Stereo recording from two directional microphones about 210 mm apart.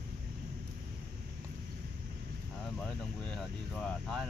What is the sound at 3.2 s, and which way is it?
Speech, centre (ahead or behind).